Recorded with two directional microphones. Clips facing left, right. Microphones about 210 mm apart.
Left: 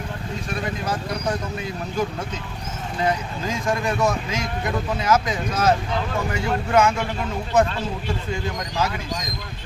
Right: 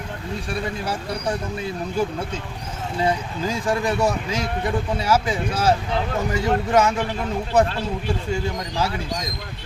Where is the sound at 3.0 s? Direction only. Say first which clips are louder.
Right 1 dB; 35° right (ahead or behind).